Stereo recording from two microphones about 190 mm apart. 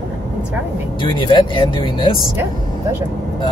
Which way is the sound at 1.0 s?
25° left (ahead or behind).